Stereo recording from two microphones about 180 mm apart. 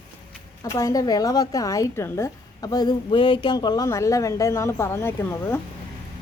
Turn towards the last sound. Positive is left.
turn(degrees=15)  # may be behind; listen again after turning